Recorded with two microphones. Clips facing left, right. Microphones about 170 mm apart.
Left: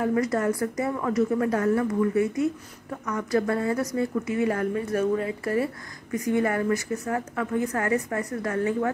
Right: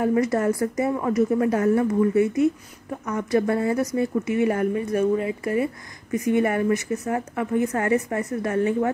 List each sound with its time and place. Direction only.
0.0 s a woman's voice: 20° right (ahead or behind)